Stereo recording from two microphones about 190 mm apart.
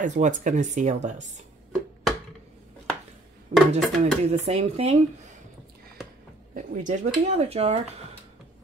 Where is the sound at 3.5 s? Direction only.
35° right (ahead or behind).